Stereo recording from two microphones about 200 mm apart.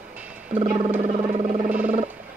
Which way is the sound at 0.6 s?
30° right (ahead or behind).